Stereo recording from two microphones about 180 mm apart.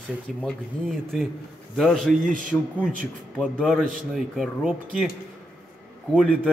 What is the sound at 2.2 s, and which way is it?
Speech, 45° right (ahead or behind).